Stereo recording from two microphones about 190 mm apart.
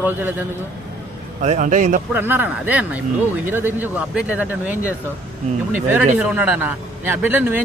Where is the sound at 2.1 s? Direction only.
10° right (ahead or behind).